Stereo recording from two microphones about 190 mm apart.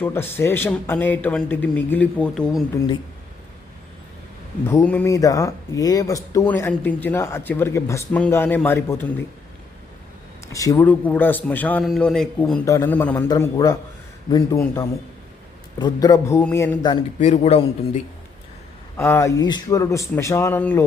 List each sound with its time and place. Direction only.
0.0 s speech: 10° left (ahead or behind)
4.6 s speech: 10° left (ahead or behind)
10.5 s a man's voice: 15° left (ahead or behind)
15.8 s speech: 20° left (ahead or behind)
17.2 s a man's voice: 35° left (ahead or behind)
18.9 s speech: 10° left (ahead or behind)